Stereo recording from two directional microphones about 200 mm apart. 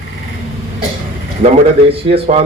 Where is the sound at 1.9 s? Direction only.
30° right (ahead or behind).